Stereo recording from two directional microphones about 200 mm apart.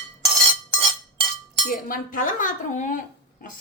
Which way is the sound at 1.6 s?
45° left (ahead or behind).